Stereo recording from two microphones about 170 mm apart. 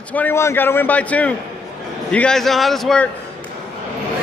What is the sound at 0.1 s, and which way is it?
A man's voice, 10° left (ahead or behind).